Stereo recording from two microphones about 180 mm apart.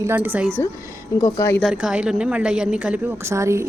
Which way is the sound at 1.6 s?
5° right (ahead or behind).